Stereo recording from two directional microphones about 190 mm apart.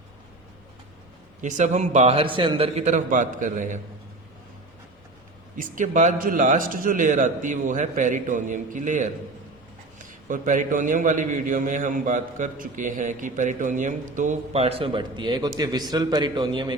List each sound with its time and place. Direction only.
1.4 s a man's voice: 40° right (ahead or behind)
5.5 s a man's voice: 40° right (ahead or behind)
10.2 s a man's voice: 45° right (ahead or behind); by 16.7 s 25° right (ahead or behind)